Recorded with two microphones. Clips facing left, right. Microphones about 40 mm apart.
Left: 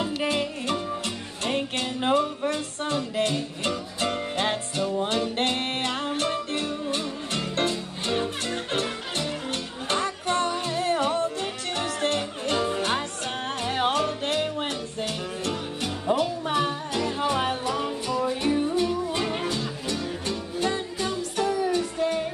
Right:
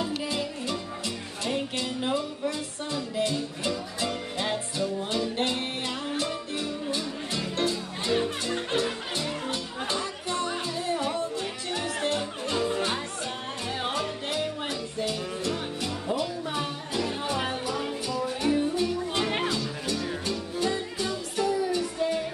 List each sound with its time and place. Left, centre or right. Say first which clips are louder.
0.0 s music: left 4 dB; left
20.6 s music: left 2 dB; left